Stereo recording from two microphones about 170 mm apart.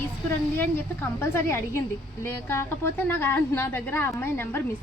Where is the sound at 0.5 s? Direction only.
15° left (ahead or behind).